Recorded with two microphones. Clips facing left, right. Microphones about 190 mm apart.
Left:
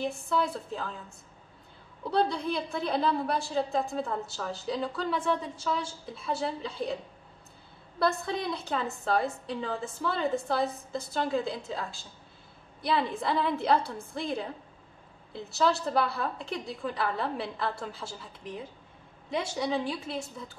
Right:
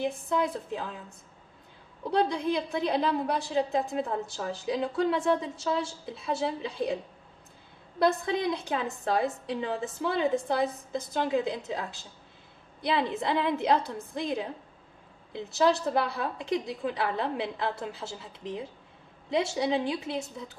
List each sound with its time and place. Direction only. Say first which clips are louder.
0.0 s a woman's voice: right 1 dB; 15° right (ahead or behind)
2.0 s a woman's voice: right 1 dB; 15° right (ahead or behind)
8.0 s a woman's voice: right 3 dB; 15° right (ahead or behind)
19.3 s a woman's voice: right 3 dB; 25° right (ahead or behind)